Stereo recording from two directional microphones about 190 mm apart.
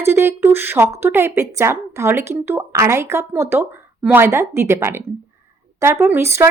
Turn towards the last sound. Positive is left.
turn(degrees=-15)  # may be behind; listen again after turning